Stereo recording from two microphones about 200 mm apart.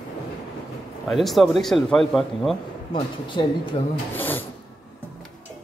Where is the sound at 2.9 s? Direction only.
25° left (ahead or behind).